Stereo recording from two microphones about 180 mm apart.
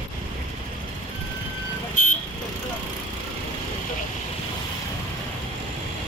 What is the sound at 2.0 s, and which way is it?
Vehicle, 45° left (ahead or behind).